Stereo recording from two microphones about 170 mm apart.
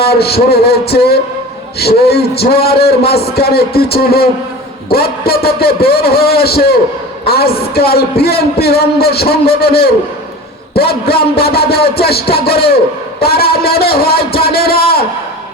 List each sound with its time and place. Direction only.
0.0 s a man's voice: 70° left (ahead or behind)